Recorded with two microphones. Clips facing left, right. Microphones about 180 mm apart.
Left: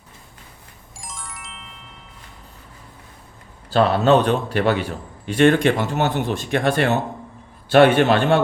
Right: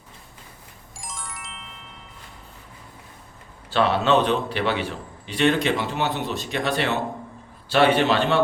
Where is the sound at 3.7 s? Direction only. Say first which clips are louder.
Left 4 dB; 40° left (ahead or behind).